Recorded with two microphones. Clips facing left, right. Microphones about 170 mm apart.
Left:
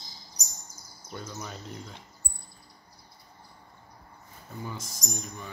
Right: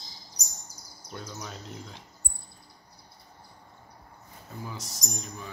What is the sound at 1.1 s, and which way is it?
Speech, 5° left (ahead or behind).